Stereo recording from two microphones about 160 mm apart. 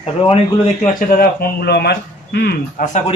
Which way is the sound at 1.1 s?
65° left (ahead or behind).